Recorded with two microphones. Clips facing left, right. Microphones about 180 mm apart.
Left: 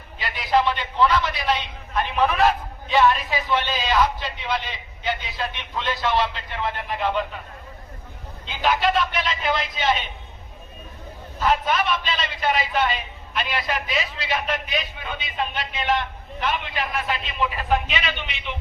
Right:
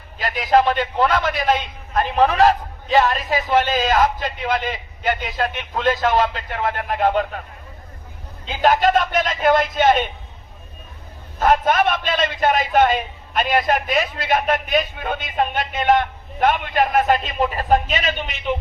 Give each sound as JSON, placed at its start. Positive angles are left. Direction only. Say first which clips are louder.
{"t": 0.2, "sound": "a man's voice", "louder": "right 5 dB", "side_deg": -45}
{"t": 8.4, "sound": "a man's voice", "louder": "right 5 dB", "side_deg": -45}
{"t": 11.3, "sound": "a man's voice", "louder": "right 5 dB", "side_deg": -50}